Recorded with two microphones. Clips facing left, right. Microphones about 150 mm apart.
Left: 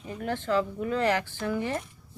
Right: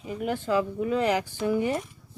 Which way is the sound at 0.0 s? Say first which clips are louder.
Right 3 dB; 10° right (ahead or behind).